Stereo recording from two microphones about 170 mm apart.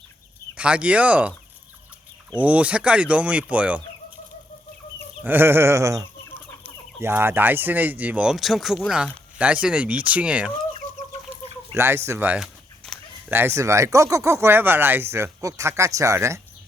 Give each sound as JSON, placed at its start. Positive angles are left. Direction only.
{"t": 0.5, "sound": "speech", "side_deg": -5}
{"t": 2.4, "sound": "speech", "side_deg": -10}
{"t": 5.2, "sound": "speech", "side_deg": -10}
{"t": 11.7, "sound": "speech", "side_deg": -15}
{"t": 12.8, "sound": "dog", "side_deg": 0}
{"t": 13.3, "sound": "speech", "side_deg": -15}